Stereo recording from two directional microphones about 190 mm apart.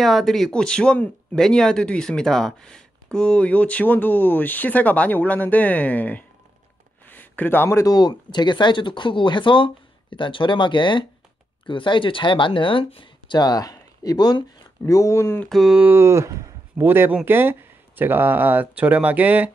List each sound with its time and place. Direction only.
0.0 s speech: centre (ahead or behind)
15.5 s speech: 5° right (ahead or behind)